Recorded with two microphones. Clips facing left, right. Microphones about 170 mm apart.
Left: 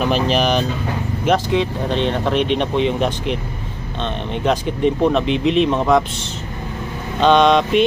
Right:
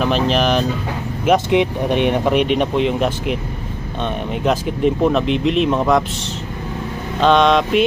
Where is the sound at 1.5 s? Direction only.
15° right (ahead or behind).